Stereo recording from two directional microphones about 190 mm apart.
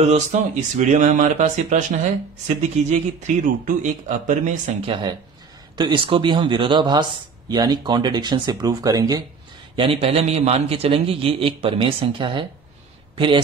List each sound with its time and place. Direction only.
0.0 s speech: 35° right (ahead or behind)
4.8 s speech: 25° right (ahead or behind)
9.8 s speech: 30° right (ahead or behind)